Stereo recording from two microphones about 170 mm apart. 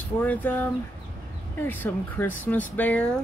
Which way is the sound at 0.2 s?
10° left (ahead or behind).